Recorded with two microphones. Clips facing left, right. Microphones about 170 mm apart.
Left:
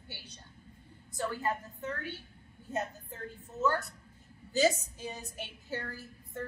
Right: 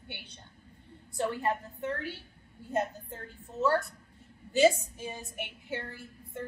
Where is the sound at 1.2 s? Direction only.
25° right (ahead or behind).